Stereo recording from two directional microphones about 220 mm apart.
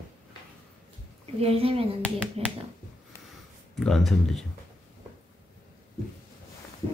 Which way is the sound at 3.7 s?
Centre (ahead or behind).